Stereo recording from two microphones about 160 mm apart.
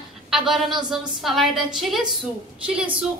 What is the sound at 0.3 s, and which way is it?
A woman's voice, centre (ahead or behind).